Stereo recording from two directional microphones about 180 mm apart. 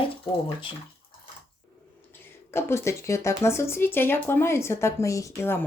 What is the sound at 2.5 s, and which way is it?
Speech, 15° left (ahead or behind).